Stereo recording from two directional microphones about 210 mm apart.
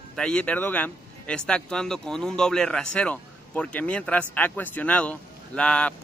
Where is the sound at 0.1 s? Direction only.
5° left (ahead or behind).